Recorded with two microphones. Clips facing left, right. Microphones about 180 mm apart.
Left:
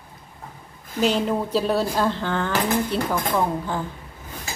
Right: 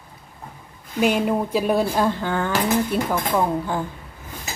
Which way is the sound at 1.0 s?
10° right (ahead or behind).